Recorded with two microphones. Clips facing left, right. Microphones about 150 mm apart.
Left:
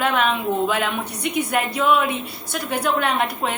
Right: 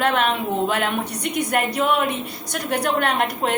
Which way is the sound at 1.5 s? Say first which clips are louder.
Left 1 dB; 45° right (ahead or behind).